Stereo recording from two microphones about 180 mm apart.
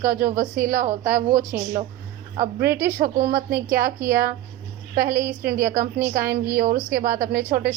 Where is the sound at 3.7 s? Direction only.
55° right (ahead or behind).